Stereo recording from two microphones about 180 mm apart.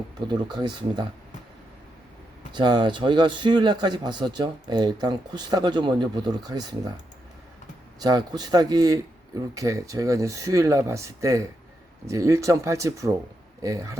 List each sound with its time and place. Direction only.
0.3 s a man's voice: 25° right (ahead or behind)
2.6 s a man's voice: 25° right (ahead or behind)
7.9 s a man's voice: 20° right (ahead or behind)